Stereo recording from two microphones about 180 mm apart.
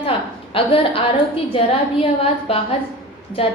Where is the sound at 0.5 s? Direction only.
30° left (ahead or behind).